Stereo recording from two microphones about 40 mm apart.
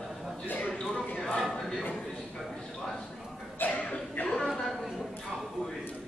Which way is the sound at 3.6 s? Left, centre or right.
Left.